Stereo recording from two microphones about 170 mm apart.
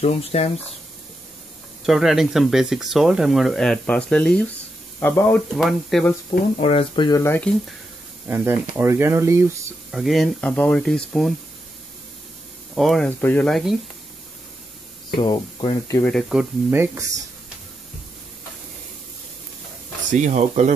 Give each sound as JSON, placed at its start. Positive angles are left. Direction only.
{"t": 0.0, "sound": "speech", "side_deg": 35}
{"t": 1.9, "sound": "speech", "side_deg": 0}
{"t": 5.6, "sound": "speech", "side_deg": 0}
{"t": 6.6, "sound": "speech", "side_deg": 30}
{"t": 8.3, "sound": "speech", "side_deg": -15}
{"t": 9.8, "sound": "speech", "side_deg": 0}
{"t": 12.7, "sound": "speech", "side_deg": 0}
{"t": 15.1, "sound": "speech", "side_deg": 30}
{"t": 16.0, "sound": "speech", "side_deg": 5}
{"t": 16.7, "sound": "speech", "side_deg": -15}
{"t": 20.1, "sound": "speech", "side_deg": -45}